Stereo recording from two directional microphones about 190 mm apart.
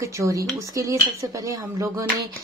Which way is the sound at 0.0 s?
15° right (ahead or behind).